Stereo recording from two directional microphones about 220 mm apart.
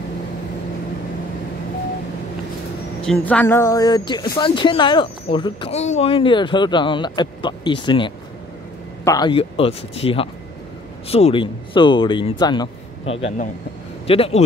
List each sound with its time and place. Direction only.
3.0 s speech: 5° left (ahead or behind); by 14.4 s 25° left (ahead or behind)